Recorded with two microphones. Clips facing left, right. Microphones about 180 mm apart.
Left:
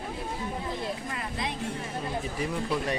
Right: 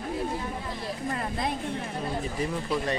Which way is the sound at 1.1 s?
45° right (ahead or behind).